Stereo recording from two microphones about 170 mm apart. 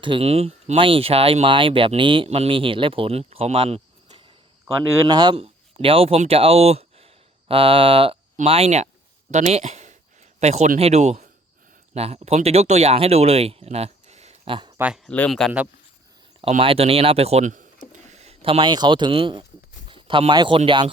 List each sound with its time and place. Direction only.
0.0 s speech: 30° right (ahead or behind)
15.0 s speech: 5° left (ahead or behind)
16.4 s speech: 35° right (ahead or behind)